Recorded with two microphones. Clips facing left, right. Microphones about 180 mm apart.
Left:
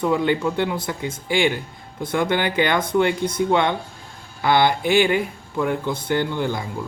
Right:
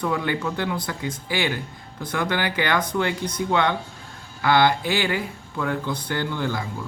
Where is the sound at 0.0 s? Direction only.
20° left (ahead or behind).